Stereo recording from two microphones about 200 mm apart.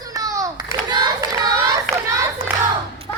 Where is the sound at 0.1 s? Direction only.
15° right (ahead or behind).